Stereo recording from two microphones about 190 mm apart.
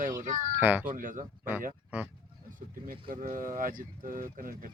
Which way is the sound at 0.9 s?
45° right (ahead or behind).